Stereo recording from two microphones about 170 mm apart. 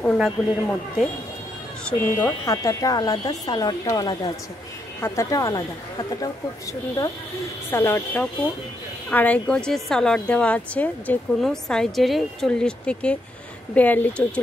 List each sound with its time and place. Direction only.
0.0 s speech: 5° left (ahead or behind); by 6.3 s 20° left (ahead or behind)
7.7 s speech: 15° left (ahead or behind)